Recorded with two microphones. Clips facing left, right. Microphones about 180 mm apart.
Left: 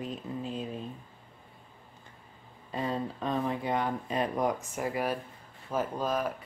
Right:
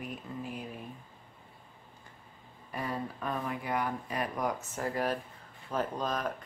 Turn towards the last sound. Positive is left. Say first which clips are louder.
# left 3 dB
turn(degrees=5)  # may be behind; listen again after turning